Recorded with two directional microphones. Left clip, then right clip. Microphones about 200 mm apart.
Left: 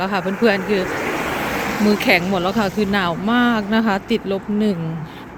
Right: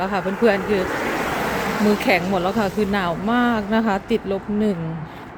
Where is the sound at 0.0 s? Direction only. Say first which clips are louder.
Left 1 dB; 10° right (ahead or behind).